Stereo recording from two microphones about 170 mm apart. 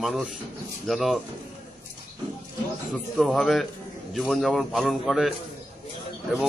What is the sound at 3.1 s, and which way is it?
A man's voice, centre (ahead or behind).